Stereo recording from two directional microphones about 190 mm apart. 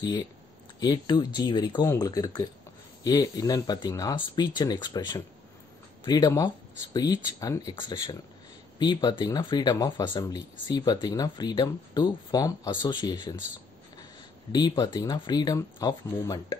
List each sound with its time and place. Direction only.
0.7 s speech: 20° left (ahead or behind)
14.5 s speech: 20° left (ahead or behind)